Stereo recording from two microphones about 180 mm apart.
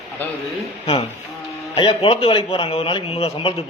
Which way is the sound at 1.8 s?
30° left (ahead or behind).